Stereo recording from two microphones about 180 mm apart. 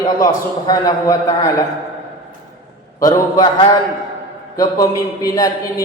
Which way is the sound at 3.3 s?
25° left (ahead or behind).